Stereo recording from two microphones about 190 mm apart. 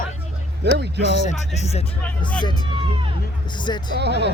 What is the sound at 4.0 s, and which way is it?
Speech, 65° right (ahead or behind).